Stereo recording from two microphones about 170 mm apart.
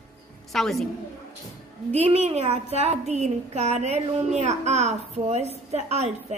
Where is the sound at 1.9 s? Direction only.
40° right (ahead or behind).